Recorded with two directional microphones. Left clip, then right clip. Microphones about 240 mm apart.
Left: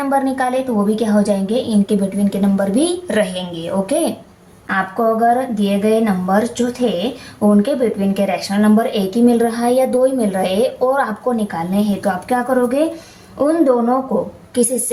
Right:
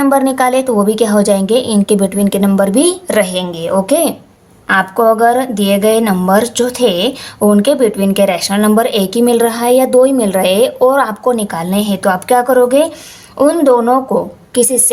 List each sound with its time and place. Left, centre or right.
0.0 s a woman's voice: right